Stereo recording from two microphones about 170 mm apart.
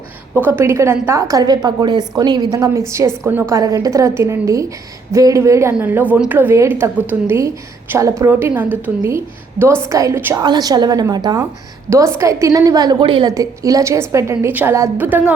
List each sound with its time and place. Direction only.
0.3 s a woman's voice: 10° right (ahead or behind)